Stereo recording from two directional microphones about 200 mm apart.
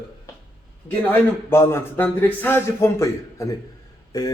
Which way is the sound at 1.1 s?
10° left (ahead or behind).